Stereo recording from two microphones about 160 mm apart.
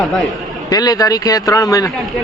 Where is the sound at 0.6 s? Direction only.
25° left (ahead or behind).